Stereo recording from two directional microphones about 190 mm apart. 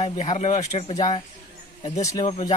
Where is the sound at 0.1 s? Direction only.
40° left (ahead or behind).